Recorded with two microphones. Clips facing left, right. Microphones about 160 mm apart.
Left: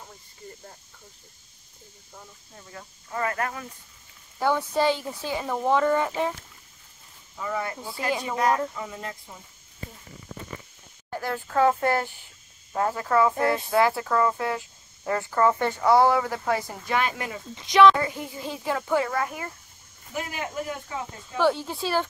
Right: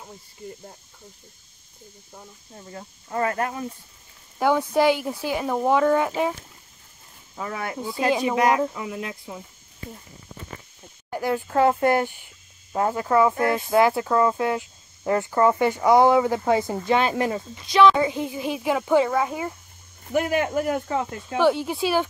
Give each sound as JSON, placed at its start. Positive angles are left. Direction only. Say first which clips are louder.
{"t": 2.5, "sound": "speech", "louder": "right 5 dB", "side_deg": -35}
{"t": 4.4, "sound": "speech", "louder": "right 4 dB", "side_deg": -15}
{"t": 7.3, "sound": "cricket", "louder": "even", "side_deg": -75}
{"t": 11.1, "sound": "speech", "louder": "right 5 dB", "side_deg": -15}
{"t": 17.6, "sound": "speech", "louder": "even", "side_deg": 15}
{"t": 17.9, "sound": "speech", "louder": "right 6 dB", "side_deg": -20}
{"t": 20.1, "sound": "speech", "louder": "right 10 dB", "side_deg": -65}
{"t": 21.4, "sound": "speech", "louder": "right 3 dB", "side_deg": -15}